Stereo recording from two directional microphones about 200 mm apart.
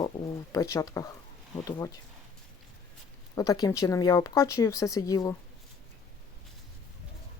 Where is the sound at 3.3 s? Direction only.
20° left (ahead or behind).